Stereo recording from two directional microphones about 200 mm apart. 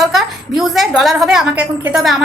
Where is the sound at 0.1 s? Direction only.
Centre (ahead or behind).